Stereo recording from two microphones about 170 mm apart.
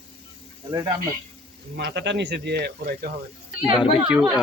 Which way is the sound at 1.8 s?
90° right.